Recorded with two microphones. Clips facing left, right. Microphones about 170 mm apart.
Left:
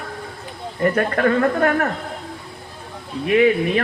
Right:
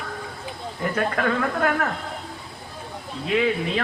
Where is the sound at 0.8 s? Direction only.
55° left (ahead or behind).